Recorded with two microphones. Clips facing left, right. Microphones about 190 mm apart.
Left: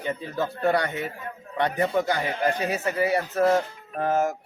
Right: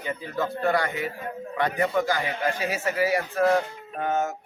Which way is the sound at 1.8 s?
35° left (ahead or behind).